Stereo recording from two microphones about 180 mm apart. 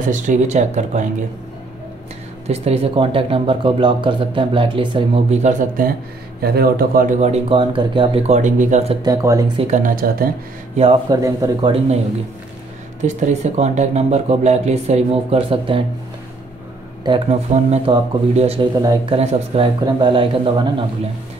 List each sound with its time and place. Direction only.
0.0 s speech: 45° right (ahead or behind)
2.4 s speech: 35° right (ahead or behind)
6.4 s speech: 60° right (ahead or behind); by 8.9 s 40° right (ahead or behind)
9.0 s speech: 20° right (ahead or behind)
9.6 s speech: 45° right (ahead or behind)
11.1 s speech: 20° right (ahead or behind)
13.0 s speech: 40° right (ahead or behind)
17.3 s speech: 35° right (ahead or behind)
18.8 s speech: 20° right (ahead or behind)
19.1 s speech: 30° right (ahead or behind)